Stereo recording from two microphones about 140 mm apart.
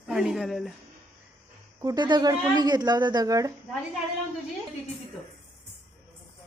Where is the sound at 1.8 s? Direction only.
25° right (ahead or behind).